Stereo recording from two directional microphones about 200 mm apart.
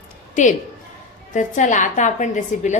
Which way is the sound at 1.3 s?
40° left (ahead or behind).